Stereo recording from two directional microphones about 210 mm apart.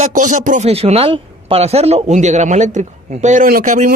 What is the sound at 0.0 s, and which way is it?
A man's voice, 35° right (ahead or behind).